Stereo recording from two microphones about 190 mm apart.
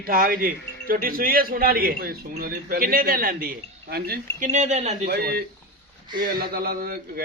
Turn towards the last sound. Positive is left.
turn(degrees=-50)  # may be behind; listen again after turning